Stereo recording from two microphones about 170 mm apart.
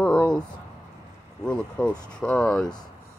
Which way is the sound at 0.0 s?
5° left (ahead or behind).